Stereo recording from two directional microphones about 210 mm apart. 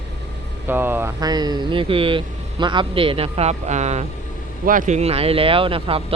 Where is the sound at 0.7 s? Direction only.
10° right (ahead or behind).